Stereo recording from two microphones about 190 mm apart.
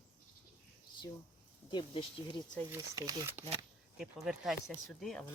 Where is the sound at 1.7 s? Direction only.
30° left (ahead or behind).